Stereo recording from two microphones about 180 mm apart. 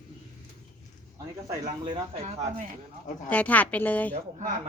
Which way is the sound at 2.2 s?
35° right (ahead or behind).